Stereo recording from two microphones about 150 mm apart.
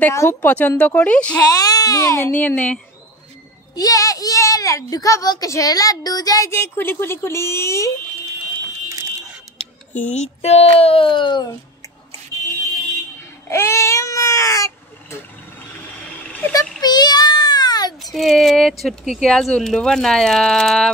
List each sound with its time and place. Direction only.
0.0 s speech: 20° left (ahead or behind)
1.5 s speech: 25° left (ahead or behind)
3.7 s a child's voice: 25° left (ahead or behind)
9.6 s speech: 50° left (ahead or behind); by 11.4 s 30° left (ahead or behind)
13.2 s baby cry: 15° left (ahead or behind)
16.3 s vehicle: 10° left (ahead or behind)
16.8 s a sound: 30° left (ahead or behind)
17.9 s speech: centre (ahead or behind)